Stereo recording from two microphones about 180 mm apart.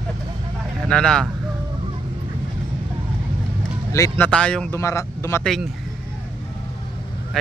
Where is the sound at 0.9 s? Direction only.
5° left (ahead or behind).